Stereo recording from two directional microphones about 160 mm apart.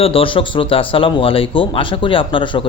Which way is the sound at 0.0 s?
35° left (ahead or behind).